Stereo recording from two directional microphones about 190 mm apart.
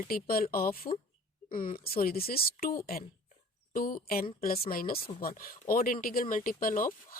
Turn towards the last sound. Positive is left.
turn(degrees=45)  # may be behind; listen again after turning